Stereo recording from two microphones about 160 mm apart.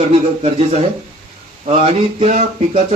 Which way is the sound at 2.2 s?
45° right (ahead or behind).